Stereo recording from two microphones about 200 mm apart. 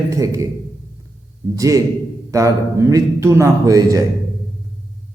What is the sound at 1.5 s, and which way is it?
Speech, 15° right (ahead or behind).